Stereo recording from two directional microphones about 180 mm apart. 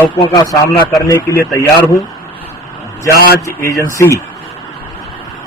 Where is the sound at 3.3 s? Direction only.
15° left (ahead or behind).